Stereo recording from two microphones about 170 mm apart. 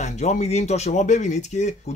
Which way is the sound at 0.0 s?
40° left (ahead or behind).